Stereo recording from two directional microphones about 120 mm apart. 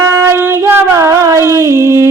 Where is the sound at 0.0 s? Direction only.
25° right (ahead or behind).